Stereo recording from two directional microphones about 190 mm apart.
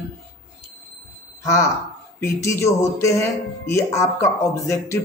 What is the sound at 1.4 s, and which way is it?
Speech, 15° left (ahead or behind).